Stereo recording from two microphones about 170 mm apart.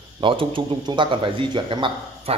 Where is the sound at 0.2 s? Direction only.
30° right (ahead or behind).